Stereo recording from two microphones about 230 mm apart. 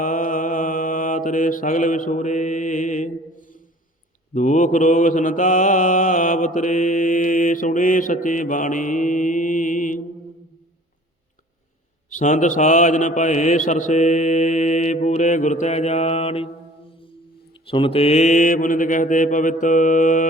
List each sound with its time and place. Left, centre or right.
0.0 s mantra: left
12.1 s mantra: left
16.9 s music: left
17.7 s mantra: left